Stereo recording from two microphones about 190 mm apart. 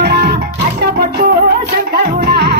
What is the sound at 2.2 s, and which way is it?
Music, 55° right (ahead or behind).